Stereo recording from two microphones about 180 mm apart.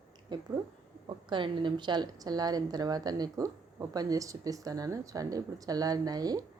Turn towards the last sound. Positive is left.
turn(degrees=-20)  # may be behind; listen again after turning